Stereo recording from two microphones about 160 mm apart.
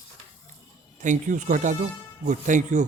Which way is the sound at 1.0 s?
50° right (ahead or behind).